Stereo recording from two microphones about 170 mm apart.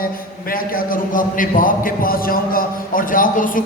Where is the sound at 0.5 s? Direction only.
60° left (ahead or behind).